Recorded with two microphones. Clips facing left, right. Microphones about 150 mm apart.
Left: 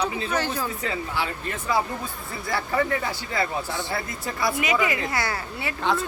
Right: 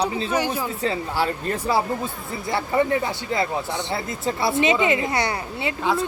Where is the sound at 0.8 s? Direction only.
35° right (ahead or behind).